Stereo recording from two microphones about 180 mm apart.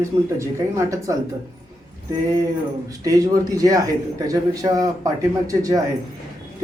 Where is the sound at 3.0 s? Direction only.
20° right (ahead or behind).